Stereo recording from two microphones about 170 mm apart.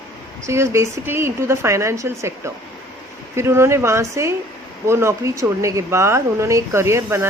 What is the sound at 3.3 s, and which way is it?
Speech, 15° right (ahead or behind).